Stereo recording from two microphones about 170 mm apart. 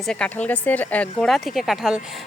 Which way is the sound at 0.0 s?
5° left (ahead or behind).